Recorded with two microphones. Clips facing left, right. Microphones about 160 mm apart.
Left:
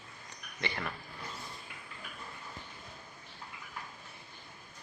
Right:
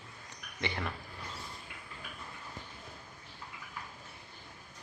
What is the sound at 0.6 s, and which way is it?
Speech, 20° right (ahead or behind).